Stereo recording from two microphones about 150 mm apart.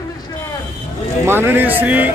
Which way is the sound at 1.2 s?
15° right (ahead or behind).